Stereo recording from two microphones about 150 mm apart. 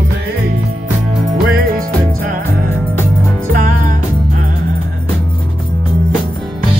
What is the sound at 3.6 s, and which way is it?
Music, 60° right (ahead or behind).